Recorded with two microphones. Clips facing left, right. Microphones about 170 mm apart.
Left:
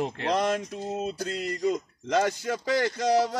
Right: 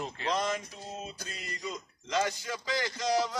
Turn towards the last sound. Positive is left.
turn(degrees=60)  # may be behind; listen again after turning